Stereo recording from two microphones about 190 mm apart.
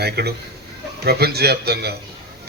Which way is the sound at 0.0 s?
55° right (ahead or behind).